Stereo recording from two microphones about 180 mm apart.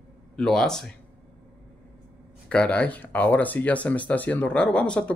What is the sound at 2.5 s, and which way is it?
Speech, 5° left (ahead or behind).